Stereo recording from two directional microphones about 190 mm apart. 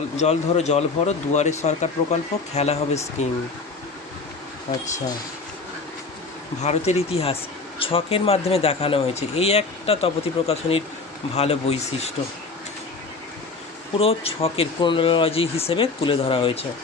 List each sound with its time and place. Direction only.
0.2 s speech: 35° left (ahead or behind)
6.6 s speech: 35° left (ahead or behind)
14.0 s speech: 30° left (ahead or behind)